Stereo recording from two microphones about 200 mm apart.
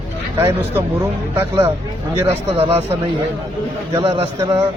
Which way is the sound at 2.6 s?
25° right (ahead or behind).